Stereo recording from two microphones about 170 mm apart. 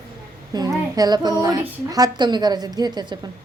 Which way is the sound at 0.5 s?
25° right (ahead or behind).